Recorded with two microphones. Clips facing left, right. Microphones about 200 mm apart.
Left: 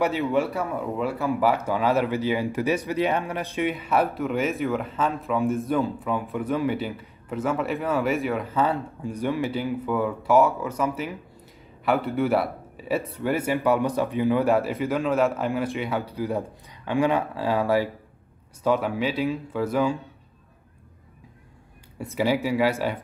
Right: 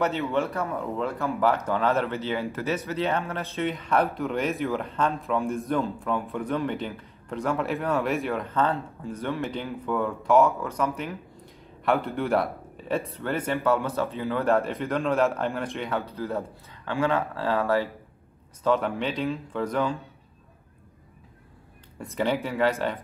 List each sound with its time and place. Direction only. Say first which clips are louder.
0.0 s speech: left 3 dB; 10° left (ahead or behind)
22.1 s speech: left 3 dB; 10° left (ahead or behind)